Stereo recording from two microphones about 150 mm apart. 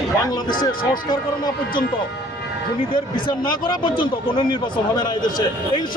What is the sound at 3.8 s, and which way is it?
Speech, 35° left (ahead or behind).